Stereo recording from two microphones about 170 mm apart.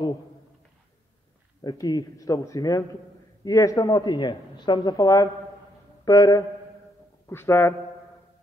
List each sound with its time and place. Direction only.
1.6 s speech: 25° left (ahead or behind)